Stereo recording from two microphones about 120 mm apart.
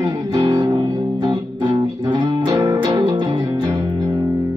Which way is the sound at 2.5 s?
25° right (ahead or behind).